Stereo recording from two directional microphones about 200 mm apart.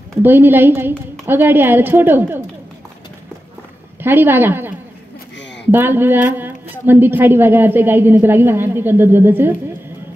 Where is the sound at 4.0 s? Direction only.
10° right (ahead or behind).